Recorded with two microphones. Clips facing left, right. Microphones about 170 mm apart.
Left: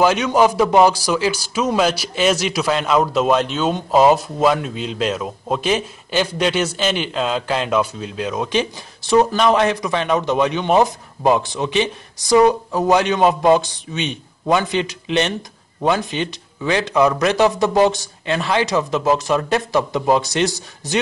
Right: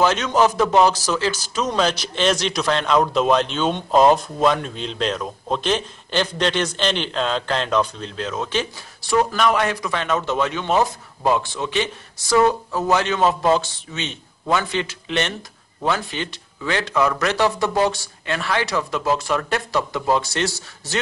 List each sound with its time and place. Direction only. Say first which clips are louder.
0.0 s a man's voice: left 3 dB; 10° left (ahead or behind)